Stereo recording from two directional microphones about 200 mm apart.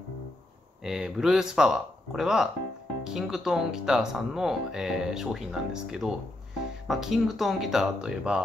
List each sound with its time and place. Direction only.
0.8 s speech: centre (ahead or behind)